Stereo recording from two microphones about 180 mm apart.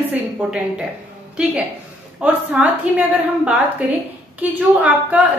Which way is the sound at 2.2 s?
10° right (ahead or behind).